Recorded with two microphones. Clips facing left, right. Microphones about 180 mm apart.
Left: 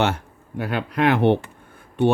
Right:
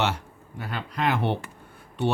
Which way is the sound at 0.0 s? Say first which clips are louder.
Left 5 dB; 55° left (ahead or behind).